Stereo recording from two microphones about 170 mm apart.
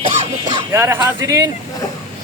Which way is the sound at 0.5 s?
15° right (ahead or behind).